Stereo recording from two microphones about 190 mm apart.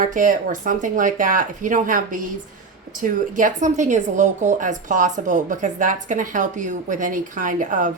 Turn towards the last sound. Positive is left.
turn(degrees=-45)  # may be behind; listen again after turning